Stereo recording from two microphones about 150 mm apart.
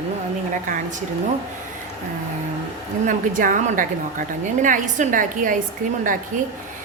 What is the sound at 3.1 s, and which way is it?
A woman's voice, 60° right (ahead or behind).